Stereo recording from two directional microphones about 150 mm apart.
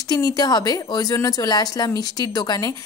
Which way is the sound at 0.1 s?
25° left (ahead or behind).